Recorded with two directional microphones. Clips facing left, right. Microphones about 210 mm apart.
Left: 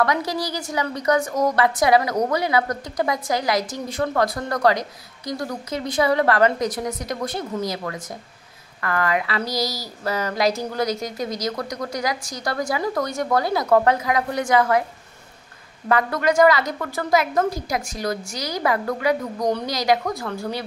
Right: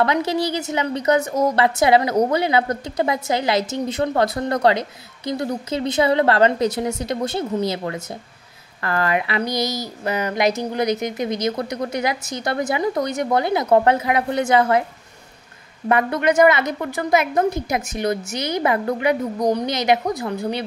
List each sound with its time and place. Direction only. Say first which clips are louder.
0.0 s a woman's voice: right 3 dB; 25° right (ahead or behind)
15.9 s a woman's voice: right 2 dB; 25° right (ahead or behind)